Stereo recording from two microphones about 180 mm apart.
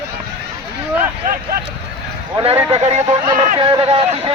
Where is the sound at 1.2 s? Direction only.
50° right (ahead or behind).